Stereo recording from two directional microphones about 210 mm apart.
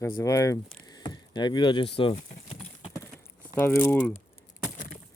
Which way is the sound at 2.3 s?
25° left (ahead or behind).